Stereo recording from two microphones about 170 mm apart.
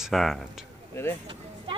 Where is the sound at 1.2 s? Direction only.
30° right (ahead or behind).